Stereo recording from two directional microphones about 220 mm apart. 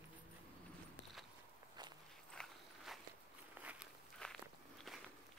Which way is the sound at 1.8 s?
20° right (ahead or behind).